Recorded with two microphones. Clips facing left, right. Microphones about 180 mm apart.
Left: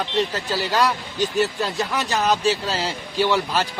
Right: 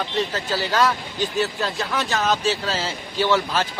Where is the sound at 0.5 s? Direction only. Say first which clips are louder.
Even; 15° left (ahead or behind).